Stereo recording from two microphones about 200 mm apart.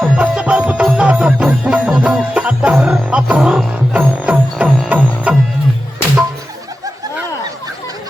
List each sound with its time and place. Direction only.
0.0 s music: 5° right (ahead or behind)